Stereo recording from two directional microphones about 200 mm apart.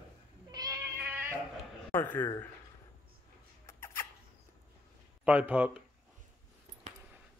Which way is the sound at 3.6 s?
15° left (ahead or behind).